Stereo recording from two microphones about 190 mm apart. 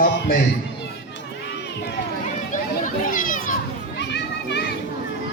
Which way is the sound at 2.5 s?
45° left (ahead or behind).